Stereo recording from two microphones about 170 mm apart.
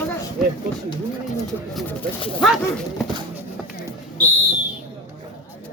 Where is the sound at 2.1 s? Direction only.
30° left (ahead or behind).